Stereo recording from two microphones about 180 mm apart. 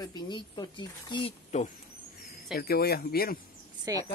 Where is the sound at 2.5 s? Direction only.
60° left (ahead or behind).